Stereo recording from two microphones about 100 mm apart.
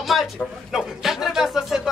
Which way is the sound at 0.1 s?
Centre (ahead or behind).